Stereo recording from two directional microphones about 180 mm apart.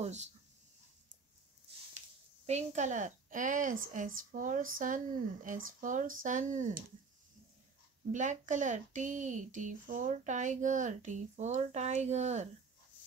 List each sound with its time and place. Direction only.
0.0 s speech: 40° right (ahead or behind)
2.4 s a woman's voice: 40° right (ahead or behind)
8.1 s a woman's voice: 45° right (ahead or behind)